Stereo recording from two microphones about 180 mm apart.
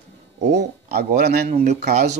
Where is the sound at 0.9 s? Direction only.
60° right (ahead or behind).